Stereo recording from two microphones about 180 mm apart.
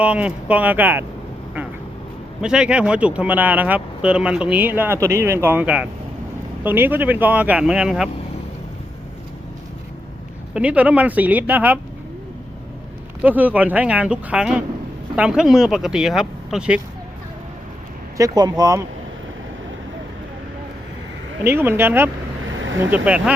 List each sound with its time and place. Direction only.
0.0 s speech: 5° right (ahead or behind)
2.4 s speech: 5° right (ahead or behind)
10.5 s speech: 10° right (ahead or behind)
13.2 s speech: 10° right (ahead or behind)
18.2 s speech: 20° right (ahead or behind)
21.4 s speech: 15° right (ahead or behind)